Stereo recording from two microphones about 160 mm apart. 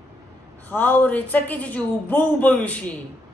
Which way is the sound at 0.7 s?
10° left (ahead or behind).